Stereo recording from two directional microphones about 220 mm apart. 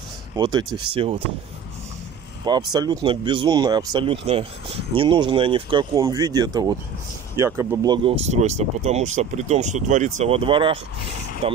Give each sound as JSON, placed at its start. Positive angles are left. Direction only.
{"t": 0.4, "sound": "speech", "side_deg": -20}
{"t": 2.4, "sound": "speech", "side_deg": -20}